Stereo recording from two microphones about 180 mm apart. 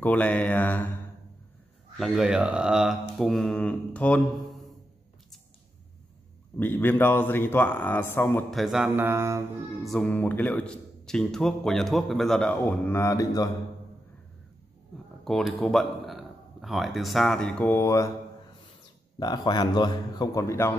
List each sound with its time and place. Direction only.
0.0 s a man's voice: 10° left (ahead or behind)
2.0 s a man's voice: centre (ahead or behind)
6.6 s a man's voice: 10° left (ahead or behind)
8.5 s speech: centre (ahead or behind)
9.8 s a man's voice: 5° left (ahead or behind)
15.2 s speech: centre (ahead or behind); by 18.1 s 15° left (ahead or behind)
19.1 s a man's voice: 20° left (ahead or behind)